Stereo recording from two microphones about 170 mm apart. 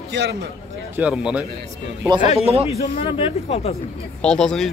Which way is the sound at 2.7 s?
35° left (ahead or behind).